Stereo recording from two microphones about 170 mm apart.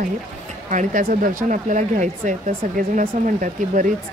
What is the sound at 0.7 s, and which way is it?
Speech, 50° right (ahead or behind).